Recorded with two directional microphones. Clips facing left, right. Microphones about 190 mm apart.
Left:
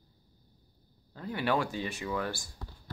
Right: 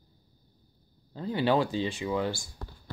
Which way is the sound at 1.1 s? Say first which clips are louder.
Right 5 dB; 30° right (ahead or behind).